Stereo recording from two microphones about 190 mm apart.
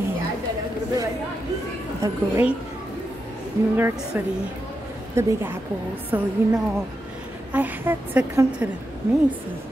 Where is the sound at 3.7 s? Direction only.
10° right (ahead or behind).